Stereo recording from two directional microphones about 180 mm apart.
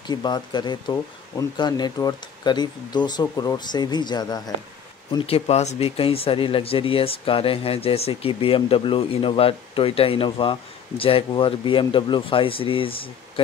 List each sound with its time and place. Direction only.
0.0 s speech: 25° left (ahead or behind)